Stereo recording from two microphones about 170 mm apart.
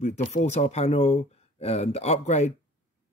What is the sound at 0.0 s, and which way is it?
Speech, 45° left (ahead or behind).